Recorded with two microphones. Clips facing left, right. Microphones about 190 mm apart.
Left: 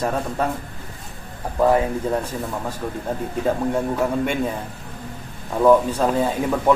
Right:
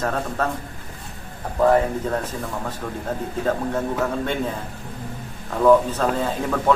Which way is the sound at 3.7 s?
10° left (ahead or behind).